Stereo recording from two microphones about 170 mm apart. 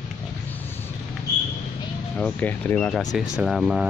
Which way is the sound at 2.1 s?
10° left (ahead or behind).